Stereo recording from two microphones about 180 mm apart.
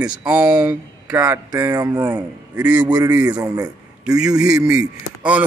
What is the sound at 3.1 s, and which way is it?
Speech, 20° right (ahead or behind).